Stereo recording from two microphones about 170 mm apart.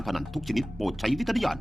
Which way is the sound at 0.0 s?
Centre (ahead or behind).